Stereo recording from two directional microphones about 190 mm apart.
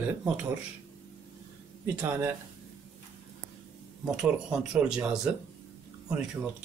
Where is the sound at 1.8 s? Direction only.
10° right (ahead or behind).